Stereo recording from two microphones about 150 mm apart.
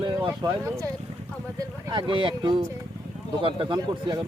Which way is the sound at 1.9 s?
30° right (ahead or behind).